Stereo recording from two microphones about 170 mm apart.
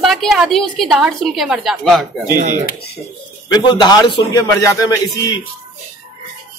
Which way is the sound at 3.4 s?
25° left (ahead or behind).